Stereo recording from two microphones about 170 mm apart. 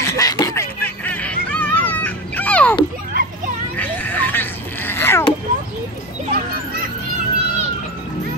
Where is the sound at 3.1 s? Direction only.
55° right (ahead or behind).